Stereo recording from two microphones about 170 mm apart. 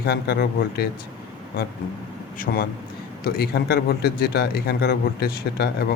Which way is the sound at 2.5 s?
55° left (ahead or behind).